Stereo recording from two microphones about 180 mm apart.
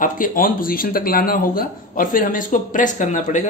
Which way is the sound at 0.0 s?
50° left (ahead or behind).